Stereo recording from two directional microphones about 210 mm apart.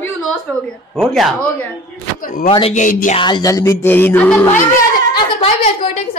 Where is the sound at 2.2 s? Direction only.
40° left (ahead or behind).